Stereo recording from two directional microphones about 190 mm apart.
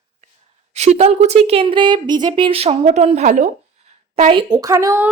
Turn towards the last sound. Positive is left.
turn(degrees=-15)  # may be behind; listen again after turning